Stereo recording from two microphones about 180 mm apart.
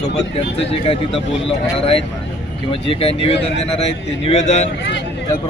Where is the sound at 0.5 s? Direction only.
30° left (ahead or behind).